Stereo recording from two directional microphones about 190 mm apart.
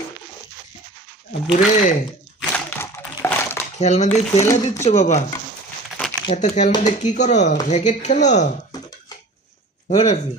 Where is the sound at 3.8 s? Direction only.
35° left (ahead or behind).